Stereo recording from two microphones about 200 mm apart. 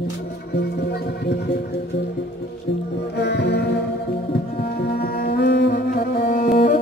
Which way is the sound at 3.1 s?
60° left (ahead or behind).